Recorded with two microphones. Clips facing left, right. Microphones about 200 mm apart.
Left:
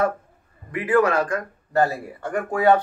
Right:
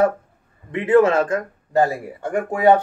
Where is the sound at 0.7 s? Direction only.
25° right (ahead or behind).